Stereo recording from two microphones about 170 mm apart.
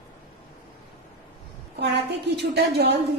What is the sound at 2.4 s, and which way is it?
Speech, 70° right (ahead or behind).